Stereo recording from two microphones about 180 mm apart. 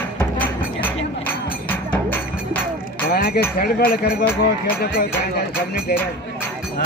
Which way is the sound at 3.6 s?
60° left (ahead or behind).